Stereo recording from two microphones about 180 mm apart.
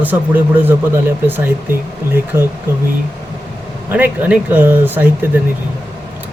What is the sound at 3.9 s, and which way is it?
Speech, 10° right (ahead or behind).